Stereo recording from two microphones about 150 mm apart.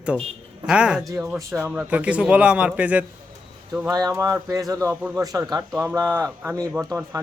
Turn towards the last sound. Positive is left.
turn(degrees=-5)  # may be behind; listen again after turning